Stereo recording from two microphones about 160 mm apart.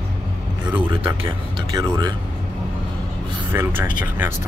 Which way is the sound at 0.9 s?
35° right (ahead or behind).